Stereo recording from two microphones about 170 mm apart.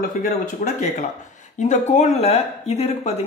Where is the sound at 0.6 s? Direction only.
50° left (ahead or behind).